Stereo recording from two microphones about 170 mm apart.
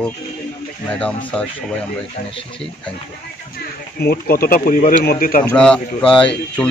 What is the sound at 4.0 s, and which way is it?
Speech, 65° left (ahead or behind).